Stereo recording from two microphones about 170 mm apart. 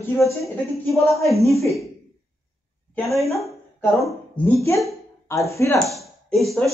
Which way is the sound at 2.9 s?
Centre (ahead or behind).